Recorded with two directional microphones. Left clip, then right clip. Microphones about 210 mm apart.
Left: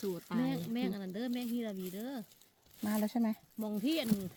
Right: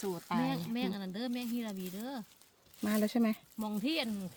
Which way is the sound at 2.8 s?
30° right (ahead or behind).